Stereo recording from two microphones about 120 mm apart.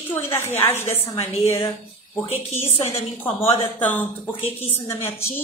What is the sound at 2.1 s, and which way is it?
A woman's voice, 20° left (ahead or behind).